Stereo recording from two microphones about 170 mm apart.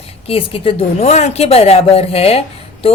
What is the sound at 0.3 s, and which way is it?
A woman's voice, 35° left (ahead or behind).